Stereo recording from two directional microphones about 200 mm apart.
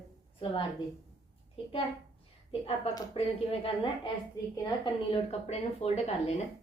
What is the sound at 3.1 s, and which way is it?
Speech, 30° left (ahead or behind).